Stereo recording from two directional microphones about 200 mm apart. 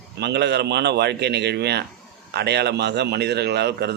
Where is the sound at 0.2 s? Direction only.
55° right (ahead or behind).